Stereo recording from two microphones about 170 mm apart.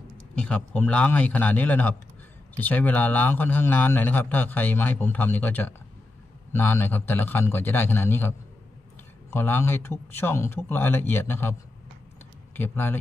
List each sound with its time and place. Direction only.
0.4 s a man's voice: 5° left (ahead or behind)
12.5 s a man's voice: 10° left (ahead or behind)